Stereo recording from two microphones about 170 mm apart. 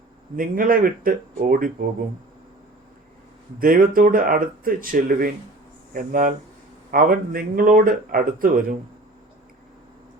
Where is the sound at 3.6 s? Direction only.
55° right (ahead or behind).